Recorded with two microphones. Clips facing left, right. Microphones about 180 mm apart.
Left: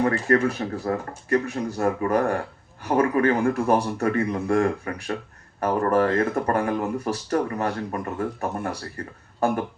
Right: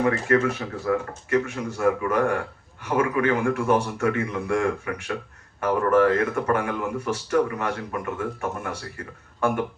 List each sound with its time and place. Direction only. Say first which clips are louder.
0.3 s speech: left 1 dB; 35° left (ahead or behind)